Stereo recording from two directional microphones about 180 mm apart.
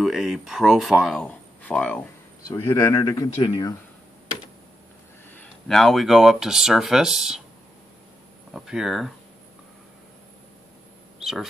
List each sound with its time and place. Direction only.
0.0 s speech: centre (ahead or behind)
2.6 s a man's voice: 25° left (ahead or behind)
5.3 s speech: 5° left (ahead or behind)
8.5 s speech: 5° right (ahead or behind)